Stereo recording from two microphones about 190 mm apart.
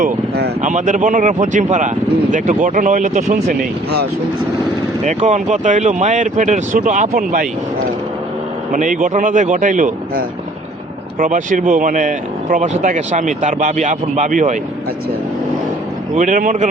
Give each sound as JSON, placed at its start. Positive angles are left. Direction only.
{"t": 0.6, "sound": "speech", "side_deg": -40}
{"t": 5.0, "sound": "speech", "side_deg": -35}
{"t": 8.7, "sound": "speech", "side_deg": -45}
{"t": 16.1, "sound": "speech", "side_deg": -45}